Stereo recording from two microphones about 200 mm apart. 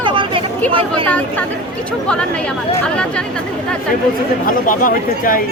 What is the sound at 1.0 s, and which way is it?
Speech, 5° left (ahead or behind).